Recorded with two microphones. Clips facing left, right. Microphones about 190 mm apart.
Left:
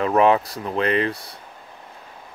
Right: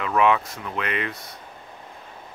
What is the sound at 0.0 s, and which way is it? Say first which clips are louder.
Speech: left 4 dB; 35° left (ahead or behind).